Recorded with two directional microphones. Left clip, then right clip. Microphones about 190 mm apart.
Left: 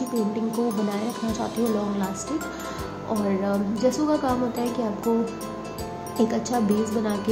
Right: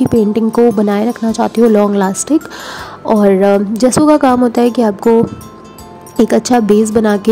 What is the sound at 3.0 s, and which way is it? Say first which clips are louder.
Speech: right 17 dB; 60° right (ahead or behind).